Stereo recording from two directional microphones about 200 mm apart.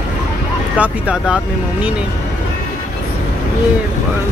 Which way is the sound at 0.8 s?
5° right (ahead or behind).